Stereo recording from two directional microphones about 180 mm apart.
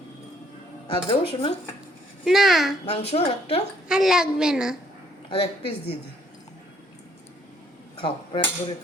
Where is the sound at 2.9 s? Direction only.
35° left (ahead or behind).